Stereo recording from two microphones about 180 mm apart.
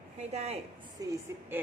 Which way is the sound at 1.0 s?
20° right (ahead or behind).